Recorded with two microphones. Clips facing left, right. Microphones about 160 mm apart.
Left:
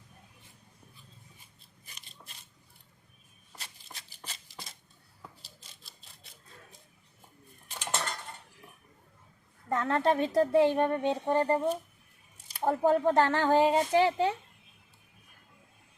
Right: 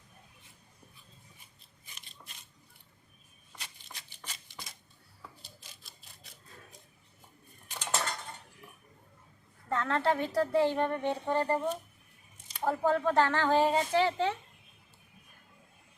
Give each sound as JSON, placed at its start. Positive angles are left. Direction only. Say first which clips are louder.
{"t": 3.9, "sound": "shuffling cards", "louder": "left 2 dB", "side_deg": 30}
{"t": 7.9, "sound": "dishes", "louder": "right 1 dB", "side_deg": -5}
{"t": 9.6, "sound": "a woman's voice", "louder": "left 2 dB", "side_deg": 15}